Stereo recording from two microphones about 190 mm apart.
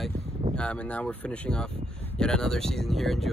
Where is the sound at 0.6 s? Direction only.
5° left (ahead or behind).